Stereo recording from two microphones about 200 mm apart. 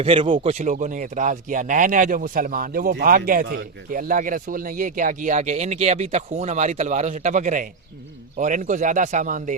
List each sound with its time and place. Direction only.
0.0 s speech: 25° right (ahead or behind)
0.3 s speech: 35° right (ahead or behind)